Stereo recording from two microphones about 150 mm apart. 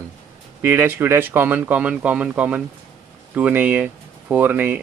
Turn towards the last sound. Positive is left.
turn(degrees=-10)  # may be behind; listen again after turning